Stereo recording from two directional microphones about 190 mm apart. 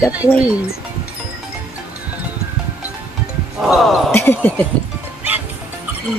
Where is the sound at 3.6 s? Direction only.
Centre (ahead or behind).